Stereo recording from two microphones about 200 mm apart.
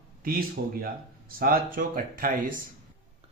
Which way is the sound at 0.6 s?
50° right (ahead or behind).